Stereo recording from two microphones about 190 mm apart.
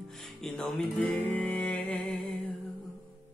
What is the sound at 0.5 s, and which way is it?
Music, 5° left (ahead or behind).